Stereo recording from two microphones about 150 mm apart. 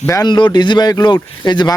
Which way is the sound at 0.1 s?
30° left (ahead or behind).